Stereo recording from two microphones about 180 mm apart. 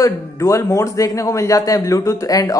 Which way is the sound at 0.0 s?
15° left (ahead or behind).